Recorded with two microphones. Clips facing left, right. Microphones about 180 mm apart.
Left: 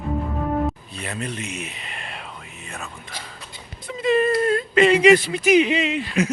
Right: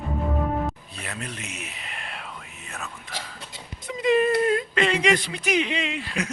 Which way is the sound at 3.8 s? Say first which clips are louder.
Left 1 dB; 15° right (ahead or behind).